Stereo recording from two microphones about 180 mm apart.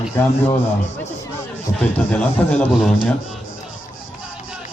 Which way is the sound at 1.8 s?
5° left (ahead or behind).